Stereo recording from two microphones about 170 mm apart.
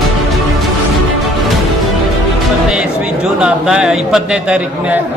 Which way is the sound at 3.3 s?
5° right (ahead or behind).